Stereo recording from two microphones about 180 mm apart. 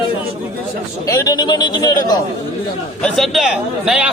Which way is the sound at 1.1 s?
20° left (ahead or behind).